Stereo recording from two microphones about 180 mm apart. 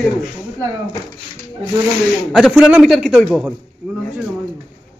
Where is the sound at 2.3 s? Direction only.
Centre (ahead or behind).